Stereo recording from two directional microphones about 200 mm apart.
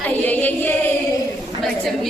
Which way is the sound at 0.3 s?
10° left (ahead or behind).